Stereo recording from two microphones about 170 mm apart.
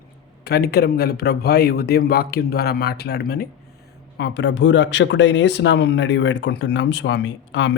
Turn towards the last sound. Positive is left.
turn(degrees=90)